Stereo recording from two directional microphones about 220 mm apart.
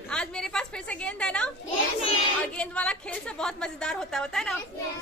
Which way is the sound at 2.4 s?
5° left (ahead or behind).